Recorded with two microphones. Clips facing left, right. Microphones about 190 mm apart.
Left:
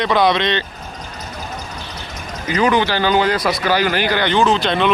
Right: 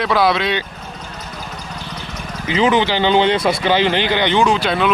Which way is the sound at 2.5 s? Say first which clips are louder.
Right 1 dB; 20° right (ahead or behind).